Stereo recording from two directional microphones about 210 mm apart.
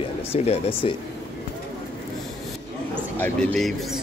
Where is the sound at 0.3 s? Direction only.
25° left (ahead or behind).